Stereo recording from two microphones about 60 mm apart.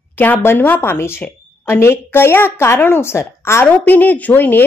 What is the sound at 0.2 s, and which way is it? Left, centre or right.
A woman's voice, left.